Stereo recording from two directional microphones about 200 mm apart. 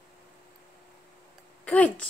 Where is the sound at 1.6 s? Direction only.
5° left (ahead or behind).